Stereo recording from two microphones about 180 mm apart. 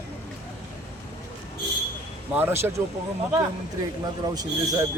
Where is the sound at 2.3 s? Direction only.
15° right (ahead or behind).